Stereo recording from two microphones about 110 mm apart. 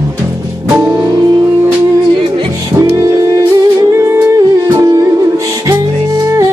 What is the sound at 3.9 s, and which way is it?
Music, 25° right (ahead or behind).